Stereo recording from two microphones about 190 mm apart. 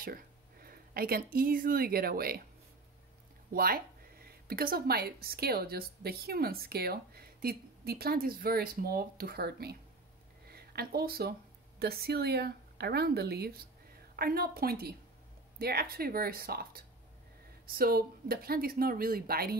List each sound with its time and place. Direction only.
0.0 s speech: 50° right (ahead or behind)
3.5 s a woman's voice: 50° right (ahead or behind)